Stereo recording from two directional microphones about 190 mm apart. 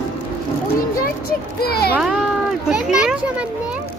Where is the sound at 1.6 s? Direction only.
55° left (ahead or behind).